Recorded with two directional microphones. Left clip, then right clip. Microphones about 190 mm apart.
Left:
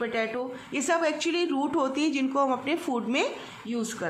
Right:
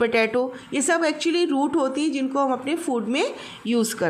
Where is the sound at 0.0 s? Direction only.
25° right (ahead or behind).